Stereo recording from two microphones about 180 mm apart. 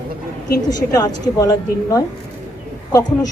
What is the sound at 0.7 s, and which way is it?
A woman's voice, 20° left (ahead or behind).